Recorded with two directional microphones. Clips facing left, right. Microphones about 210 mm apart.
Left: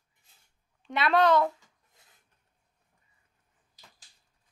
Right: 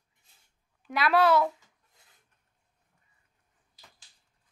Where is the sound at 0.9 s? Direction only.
5° right (ahead or behind).